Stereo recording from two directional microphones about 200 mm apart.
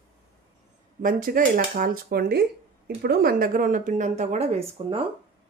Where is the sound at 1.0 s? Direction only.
45° right (ahead or behind); by 4.9 s 30° right (ahead or behind).